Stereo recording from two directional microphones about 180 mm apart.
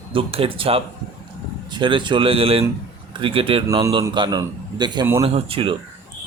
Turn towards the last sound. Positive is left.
turn(degrees=-30)  # may be behind; listen again after turning